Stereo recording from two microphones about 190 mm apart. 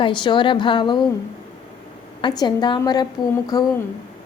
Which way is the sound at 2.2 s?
25° left (ahead or behind).